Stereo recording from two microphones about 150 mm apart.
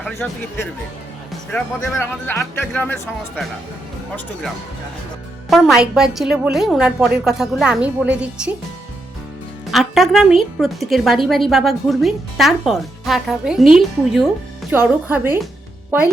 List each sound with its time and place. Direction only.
0.0 s speech: 15° left (ahead or behind)
1.3 s music: 5° left (ahead or behind)
1.8 s speech: 15° left (ahead or behind)
5.5 s a woman's voice: centre (ahead or behind)
9.7 s a woman's voice: centre (ahead or behind)
15.1 s speech: 15° right (ahead or behind)